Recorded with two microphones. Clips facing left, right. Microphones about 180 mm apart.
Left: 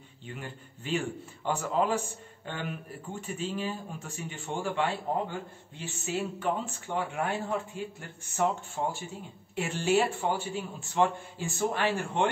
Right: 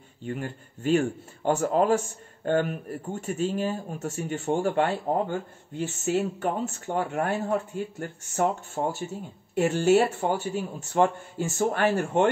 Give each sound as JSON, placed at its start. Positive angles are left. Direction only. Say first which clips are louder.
{"t": 0.2, "sound": "speech", "louder": "right 9 dB", "side_deg": -45}